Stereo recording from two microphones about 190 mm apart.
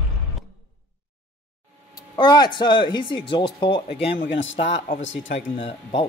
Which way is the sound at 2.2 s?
25° left (ahead or behind).